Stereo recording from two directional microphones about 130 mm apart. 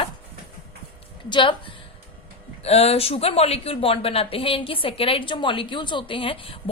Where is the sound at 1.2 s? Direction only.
35° left (ahead or behind).